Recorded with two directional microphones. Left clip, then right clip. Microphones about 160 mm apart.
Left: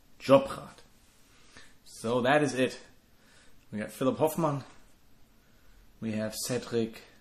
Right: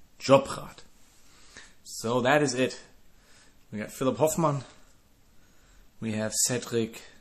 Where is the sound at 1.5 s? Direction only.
25° right (ahead or behind).